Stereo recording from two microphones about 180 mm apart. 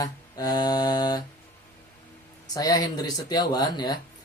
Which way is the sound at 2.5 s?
20° left (ahead or behind).